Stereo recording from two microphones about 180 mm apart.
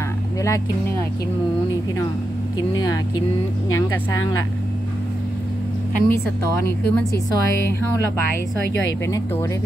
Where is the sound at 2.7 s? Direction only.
20° left (ahead or behind).